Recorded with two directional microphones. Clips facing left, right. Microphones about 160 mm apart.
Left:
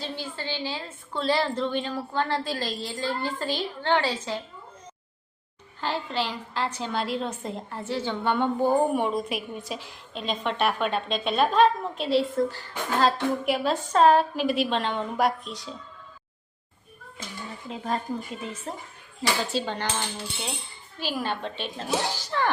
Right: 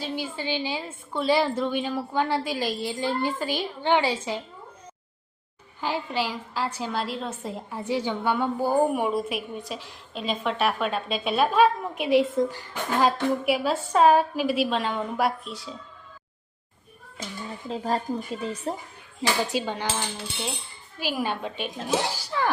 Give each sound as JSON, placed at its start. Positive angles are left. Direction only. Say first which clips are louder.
{"t": 0.0, "sound": "a woman's voice", "louder": "right 3 dB", "side_deg": -15}
{"t": 5.8, "sound": "a woman's voice", "louder": "right 1 dB", "side_deg": -10}
{"t": 17.7, "sound": "speech", "louder": "right 3 dB", "side_deg": -35}
{"t": 19.5, "sound": "a woman's voice", "louder": "right 1 dB", "side_deg": -10}
{"t": 21.0, "sound": "a woman's voice", "louder": "right 1 dB", "side_deg": -10}